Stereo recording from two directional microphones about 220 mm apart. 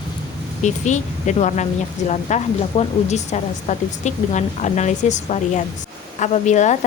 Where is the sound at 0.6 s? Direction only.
35° left (ahead or behind).